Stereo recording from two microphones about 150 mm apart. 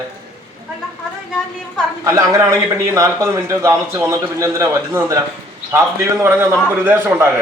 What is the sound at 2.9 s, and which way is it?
A man's voice, 20° right (ahead or behind).